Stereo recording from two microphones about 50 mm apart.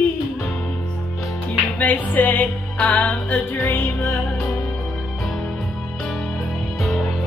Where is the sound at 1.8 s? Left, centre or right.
Left.